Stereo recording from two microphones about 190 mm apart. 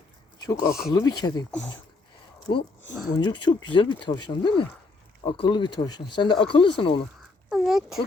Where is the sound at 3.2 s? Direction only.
25° left (ahead or behind).